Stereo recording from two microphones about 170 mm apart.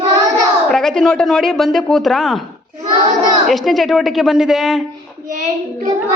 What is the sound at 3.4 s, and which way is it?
Speech, centre (ahead or behind).